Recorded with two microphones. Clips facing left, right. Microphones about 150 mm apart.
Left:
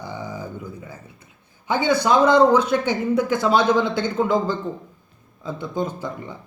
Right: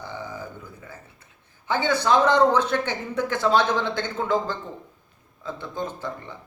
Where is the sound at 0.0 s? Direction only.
15° left (ahead or behind).